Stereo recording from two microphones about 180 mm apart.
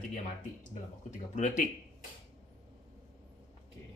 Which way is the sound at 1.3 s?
45° left (ahead or behind).